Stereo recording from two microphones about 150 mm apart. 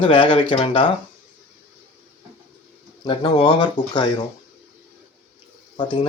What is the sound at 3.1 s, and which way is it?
Speech, 30° left (ahead or behind).